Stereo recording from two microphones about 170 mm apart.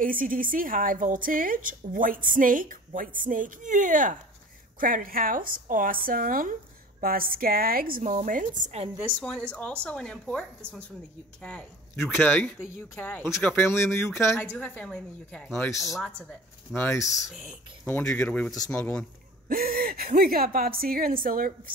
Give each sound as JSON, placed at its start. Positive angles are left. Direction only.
{"t": 0.0, "sound": "a woman's voice", "side_deg": -55}
{"t": 9.5, "sound": "speech", "side_deg": 5}
{"t": 11.4, "sound": "speech", "side_deg": 5}
{"t": 15.8, "sound": "speech", "side_deg": 0}
{"t": 16.7, "sound": "speech", "side_deg": 15}
{"t": 17.0, "sound": "speech", "side_deg": 0}
{"t": 17.8, "sound": "speech", "side_deg": 10}
{"t": 19.5, "sound": "a woman's voice", "side_deg": -60}